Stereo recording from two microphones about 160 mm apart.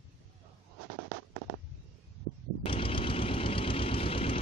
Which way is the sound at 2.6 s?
35° left (ahead or behind).